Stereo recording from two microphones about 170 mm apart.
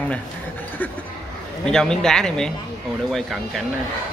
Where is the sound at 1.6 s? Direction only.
5° left (ahead or behind).